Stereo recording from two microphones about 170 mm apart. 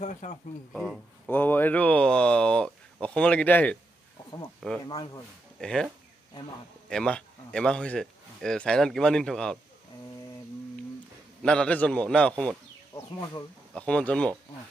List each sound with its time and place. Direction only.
0.0 s speech: 45° left (ahead or behind)
0.7 s speech: 5° left (ahead or behind)
4.8 s speech: 25° left (ahead or behind)
5.6 s speech: 5° left (ahead or behind)
6.9 s a man's voice: 5° left (ahead or behind)
11.4 s speech: 5° left (ahead or behind)
13.7 s speech: 5° left (ahead or behind)